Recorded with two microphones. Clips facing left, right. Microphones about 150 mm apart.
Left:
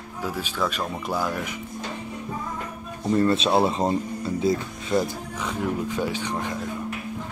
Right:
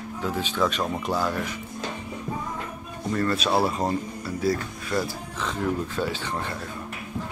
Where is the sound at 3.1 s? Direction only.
25° left (ahead or behind).